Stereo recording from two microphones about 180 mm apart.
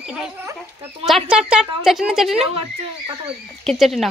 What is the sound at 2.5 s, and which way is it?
Speech, 30° right (ahead or behind).